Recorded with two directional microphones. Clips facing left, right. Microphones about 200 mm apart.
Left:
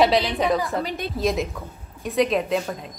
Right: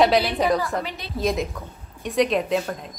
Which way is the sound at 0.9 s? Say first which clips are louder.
Left 6 dB; 50° left (ahead or behind).